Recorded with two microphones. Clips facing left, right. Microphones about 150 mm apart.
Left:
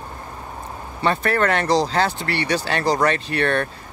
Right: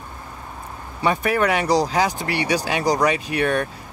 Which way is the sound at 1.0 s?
10° right (ahead or behind).